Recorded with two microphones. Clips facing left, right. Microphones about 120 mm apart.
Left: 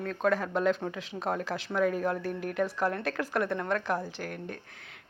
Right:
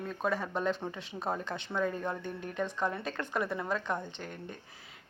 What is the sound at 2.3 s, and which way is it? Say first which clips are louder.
Speech: left 6 dB; 85° left.